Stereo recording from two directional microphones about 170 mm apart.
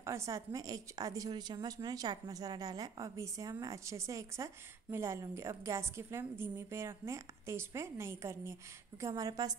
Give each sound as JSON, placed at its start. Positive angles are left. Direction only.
{"t": 0.0, "sound": "a woman's voice", "side_deg": -15}